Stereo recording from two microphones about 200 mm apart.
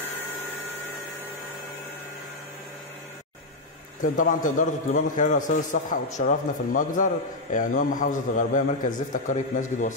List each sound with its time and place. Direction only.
4.0 s a man's voice: 40° left (ahead or behind)